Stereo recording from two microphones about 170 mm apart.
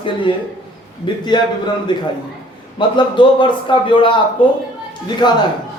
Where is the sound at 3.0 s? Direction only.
30° left (ahead or behind).